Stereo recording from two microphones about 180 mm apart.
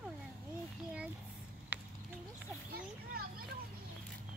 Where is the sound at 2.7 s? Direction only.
60° right (ahead or behind).